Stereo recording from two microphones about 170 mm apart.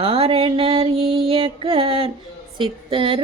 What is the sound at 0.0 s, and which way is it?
Music, 35° right (ahead or behind).